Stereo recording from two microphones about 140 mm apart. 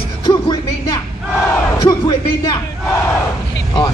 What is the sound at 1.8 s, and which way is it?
Speech, 30° left (ahead or behind).